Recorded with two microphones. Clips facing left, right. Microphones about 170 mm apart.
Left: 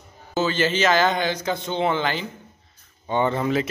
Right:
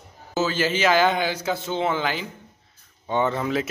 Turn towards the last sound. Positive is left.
turn(degrees=0)  # may be behind; listen again after turning